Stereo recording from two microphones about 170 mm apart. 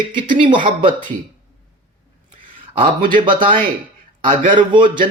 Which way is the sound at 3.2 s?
30° right (ahead or behind).